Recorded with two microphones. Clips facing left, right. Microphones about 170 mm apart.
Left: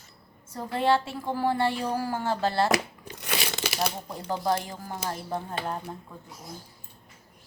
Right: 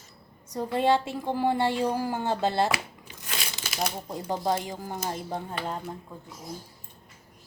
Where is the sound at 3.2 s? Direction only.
70° left (ahead or behind).